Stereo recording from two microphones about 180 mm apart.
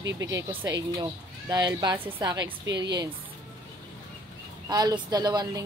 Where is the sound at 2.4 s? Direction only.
75° right (ahead or behind).